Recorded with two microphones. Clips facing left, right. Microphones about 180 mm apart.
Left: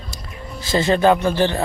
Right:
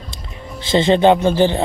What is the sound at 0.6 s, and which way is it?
Speech, 25° right (ahead or behind).